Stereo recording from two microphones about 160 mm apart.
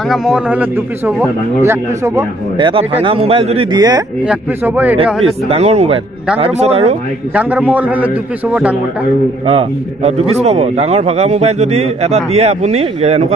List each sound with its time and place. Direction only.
0.1 s a man's voice: 5° right (ahead or behind)
2.5 s a man's voice: 30° right (ahead or behind)
4.2 s a man's voice: 10° right (ahead or behind)
5.2 s a man's voice: 40° right (ahead or behind)
7.3 s a man's voice: 10° right (ahead or behind)
9.5 s a man's voice: 40° right (ahead or behind)